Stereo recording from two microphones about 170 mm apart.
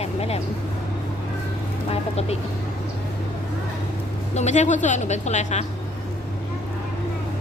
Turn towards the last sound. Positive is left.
turn(degrees=45)  # may be behind; listen again after turning